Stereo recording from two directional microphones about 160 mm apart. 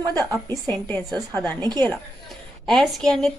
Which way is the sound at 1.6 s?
25° right (ahead or behind).